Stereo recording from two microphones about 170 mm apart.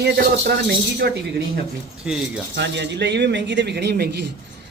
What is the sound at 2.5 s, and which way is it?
Speech, 90° right.